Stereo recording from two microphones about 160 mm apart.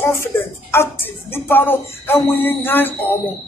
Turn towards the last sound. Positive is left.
turn(degrees=15)  # may be behind; listen again after turning